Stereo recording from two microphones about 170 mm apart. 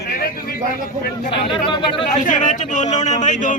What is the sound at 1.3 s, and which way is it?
Speech, 30° left (ahead or behind).